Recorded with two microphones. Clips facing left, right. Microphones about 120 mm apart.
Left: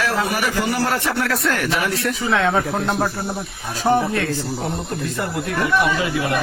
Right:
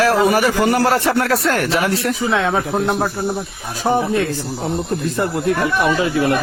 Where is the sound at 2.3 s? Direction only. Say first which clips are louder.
Left 1 dB; 10° right (ahead or behind).